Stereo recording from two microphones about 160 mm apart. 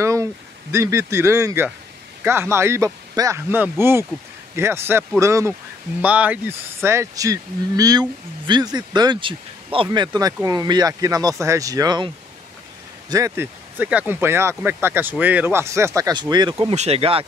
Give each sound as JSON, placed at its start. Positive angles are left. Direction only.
{"t": 0.0, "sound": "speech", "side_deg": -20}
{"t": 13.1, "sound": "speech", "side_deg": -15}
{"t": 16.7, "sound": "speech", "side_deg": -40}